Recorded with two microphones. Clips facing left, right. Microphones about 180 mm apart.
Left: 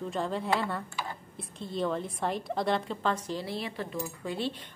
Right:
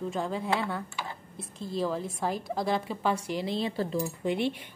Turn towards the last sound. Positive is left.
turn(degrees=-20)  # may be behind; listen again after turning